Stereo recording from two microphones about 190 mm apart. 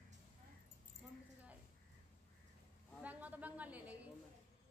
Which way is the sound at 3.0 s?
10° right (ahead or behind).